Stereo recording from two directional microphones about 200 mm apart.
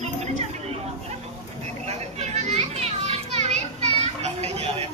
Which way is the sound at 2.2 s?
35° right (ahead or behind).